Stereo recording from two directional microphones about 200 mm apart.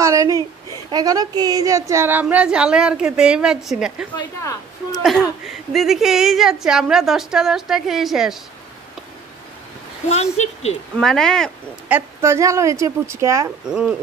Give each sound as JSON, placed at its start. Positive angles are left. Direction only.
{"t": 0.0, "sound": "a sound", "side_deg": -15}
{"t": 0.8, "sound": "speech", "side_deg": -20}
{"t": 4.2, "sound": "a woman's voice", "side_deg": 15}
{"t": 5.7, "sound": "a woman's voice", "side_deg": 0}
{"t": 10.0, "sound": "speech", "side_deg": 35}
{"t": 11.0, "sound": "a woman's voice", "side_deg": 0}
{"t": 11.9, "sound": "a woman's voice", "side_deg": -15}